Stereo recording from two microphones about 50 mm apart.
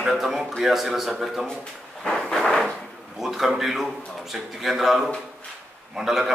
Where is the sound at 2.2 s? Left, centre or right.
Centre.